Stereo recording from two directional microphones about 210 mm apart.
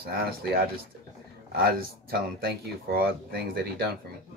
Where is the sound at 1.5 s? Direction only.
45° right (ahead or behind).